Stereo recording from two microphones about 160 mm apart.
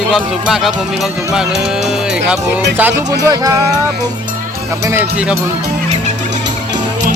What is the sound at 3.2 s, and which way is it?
Music, 20° right (ahead or behind).